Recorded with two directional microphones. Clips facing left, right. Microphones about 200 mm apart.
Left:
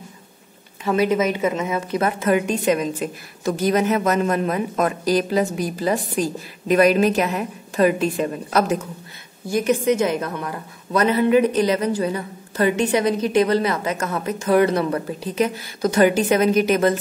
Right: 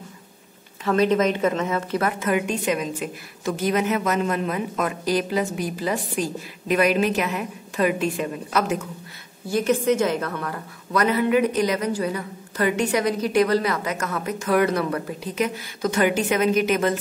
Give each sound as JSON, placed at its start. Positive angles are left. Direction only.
{"t": 0.8, "sound": "speech", "side_deg": 10}
{"t": 2.0, "sound": "a woman's voice", "side_deg": 35}
{"t": 9.5, "sound": "a woman's voice", "side_deg": 15}